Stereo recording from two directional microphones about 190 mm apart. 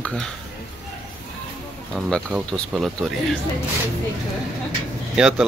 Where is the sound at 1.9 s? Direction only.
Centre (ahead or behind).